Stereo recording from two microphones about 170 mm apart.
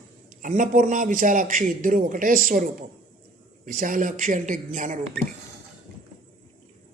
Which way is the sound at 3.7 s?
55° right (ahead or behind).